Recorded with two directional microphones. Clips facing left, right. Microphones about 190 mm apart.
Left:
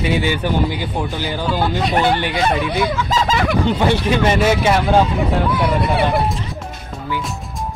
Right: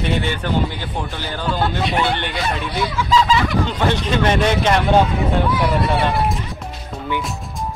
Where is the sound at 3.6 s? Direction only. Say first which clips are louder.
Left 4 dB; 10° left (ahead or behind).